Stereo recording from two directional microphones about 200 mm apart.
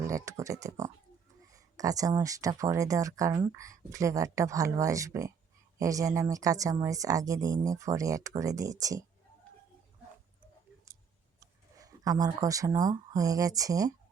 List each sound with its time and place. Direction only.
0.0 s speech: 15° right (ahead or behind)
11.3 s speech: 15° right (ahead or behind)